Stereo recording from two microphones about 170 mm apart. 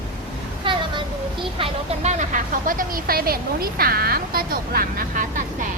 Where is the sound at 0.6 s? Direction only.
30° right (ahead or behind).